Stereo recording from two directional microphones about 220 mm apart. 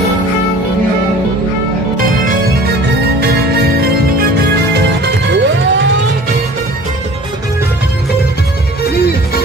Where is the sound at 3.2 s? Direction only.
45° right (ahead or behind).